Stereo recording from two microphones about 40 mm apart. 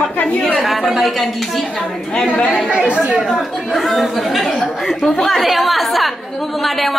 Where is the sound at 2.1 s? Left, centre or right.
Left.